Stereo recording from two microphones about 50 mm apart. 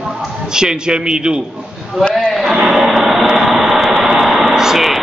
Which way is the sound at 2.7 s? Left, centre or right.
Centre.